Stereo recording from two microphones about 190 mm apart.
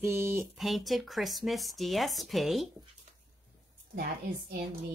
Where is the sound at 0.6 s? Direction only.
Centre (ahead or behind).